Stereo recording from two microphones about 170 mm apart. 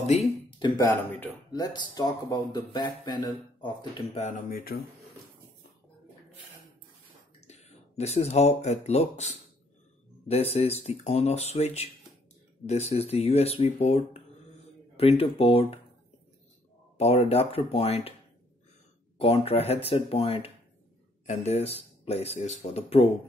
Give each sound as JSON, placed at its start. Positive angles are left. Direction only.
{"t": 0.0, "sound": "speech", "side_deg": 40}
{"t": 0.6, "sound": "a sound", "side_deg": 25}
{"t": 1.5, "sound": "speech", "side_deg": 25}
{"t": 4.5, "sound": "speech", "side_deg": 60}
{"t": 7.4, "sound": "speech", "side_deg": 40}
{"t": 16.9, "sound": "speech", "side_deg": 40}
{"t": 19.1, "sound": "speech", "side_deg": 35}